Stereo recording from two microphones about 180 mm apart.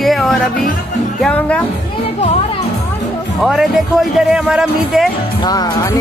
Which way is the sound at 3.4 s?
Centre (ahead or behind).